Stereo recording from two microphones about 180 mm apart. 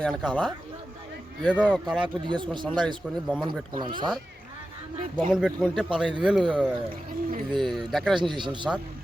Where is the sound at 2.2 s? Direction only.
25° right (ahead or behind).